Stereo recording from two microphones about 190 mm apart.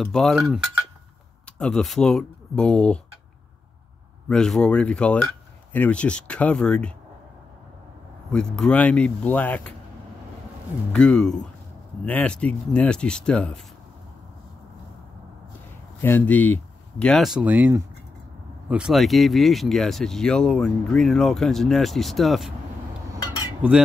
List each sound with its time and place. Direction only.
0.0 s speech: centre (ahead or behind)
1.6 s speech: 5° left (ahead or behind)
4.3 s speech: 5° left (ahead or behind)
8.3 s speech: 5° left (ahead or behind)
10.9 s speech: 5° left (ahead or behind)
16.0 s speech: 10° left (ahead or behind)
23.1 s cutlery: 20° left (ahead or behind)